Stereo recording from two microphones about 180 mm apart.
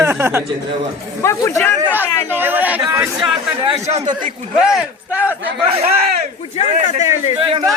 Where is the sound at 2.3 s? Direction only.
10° right (ahead or behind).